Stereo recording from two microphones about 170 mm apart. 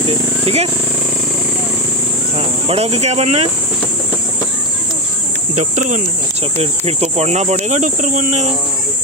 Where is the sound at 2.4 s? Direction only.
35° right (ahead or behind).